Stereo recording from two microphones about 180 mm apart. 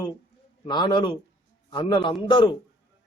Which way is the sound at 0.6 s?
25° left (ahead or behind).